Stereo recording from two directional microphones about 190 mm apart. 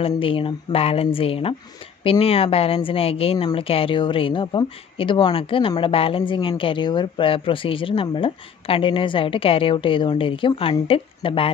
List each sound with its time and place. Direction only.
0.0 s a woman's voice: 30° left (ahead or behind)